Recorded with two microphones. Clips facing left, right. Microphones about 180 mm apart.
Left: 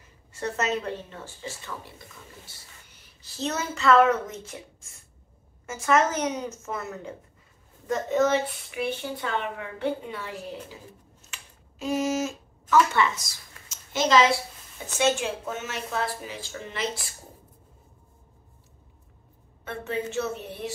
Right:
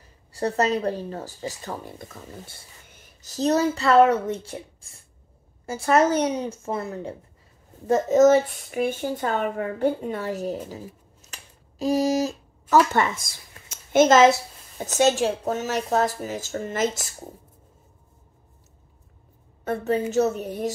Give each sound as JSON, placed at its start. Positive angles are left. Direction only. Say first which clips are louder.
{"t": 0.3, "sound": "speech", "louder": "right 5 dB", "side_deg": -35}
{"t": 19.6, "sound": "a woman's voice", "louder": "right 7 dB", "side_deg": -40}